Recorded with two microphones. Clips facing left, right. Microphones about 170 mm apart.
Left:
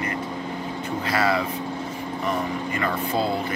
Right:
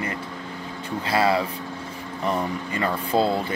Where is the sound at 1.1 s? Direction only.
30° right (ahead or behind).